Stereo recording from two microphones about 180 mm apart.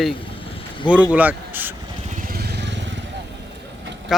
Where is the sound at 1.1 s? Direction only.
10° right (ahead or behind).